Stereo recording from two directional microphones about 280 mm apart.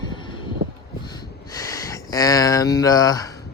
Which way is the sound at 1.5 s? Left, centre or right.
Centre.